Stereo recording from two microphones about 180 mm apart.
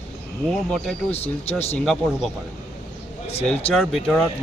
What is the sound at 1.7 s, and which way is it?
Speech, 5° left (ahead or behind).